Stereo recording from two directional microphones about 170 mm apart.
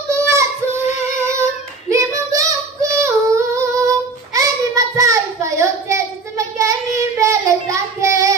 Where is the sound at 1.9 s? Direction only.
20° right (ahead or behind).